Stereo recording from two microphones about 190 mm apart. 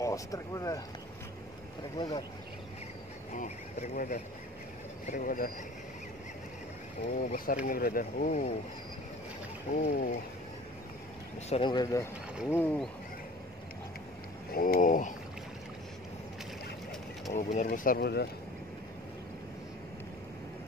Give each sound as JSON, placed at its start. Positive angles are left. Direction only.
{"t": 0.0, "sound": "speech", "side_deg": 15}
{"t": 2.0, "sound": "speech", "side_deg": 20}
{"t": 3.3, "sound": "speech", "side_deg": 35}
{"t": 7.2, "sound": "speech", "side_deg": 45}
{"t": 8.3, "sound": "speech", "side_deg": 35}
{"t": 9.8, "sound": "speech", "side_deg": 50}
{"t": 11.4, "sound": "speech", "side_deg": 30}
{"t": 14.5, "sound": "speech", "side_deg": 50}
{"t": 17.3, "sound": "speech", "side_deg": 40}
{"t": 17.6, "sound": "speech", "side_deg": 50}